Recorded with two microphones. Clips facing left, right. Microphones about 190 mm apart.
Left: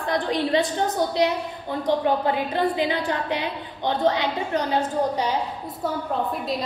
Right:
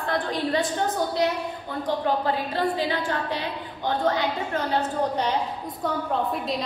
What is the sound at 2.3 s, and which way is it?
A woman's voice, 15° left (ahead or behind).